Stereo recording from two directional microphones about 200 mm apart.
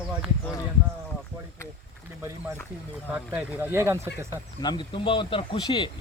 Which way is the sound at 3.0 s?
10° right (ahead or behind).